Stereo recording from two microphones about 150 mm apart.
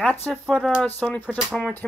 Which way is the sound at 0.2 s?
Centre (ahead or behind).